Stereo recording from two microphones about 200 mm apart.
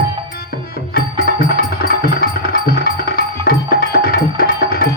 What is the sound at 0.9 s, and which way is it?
Music, 50° left (ahead or behind).